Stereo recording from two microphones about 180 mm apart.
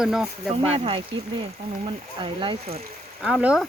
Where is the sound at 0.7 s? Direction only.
30° right (ahead or behind).